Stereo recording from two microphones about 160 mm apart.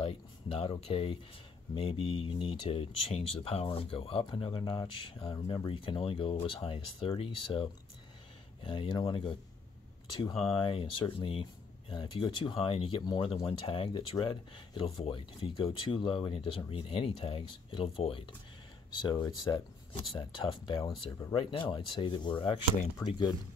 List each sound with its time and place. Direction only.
0.0 s speech: 35° left (ahead or behind); by 23.2 s 20° left (ahead or behind)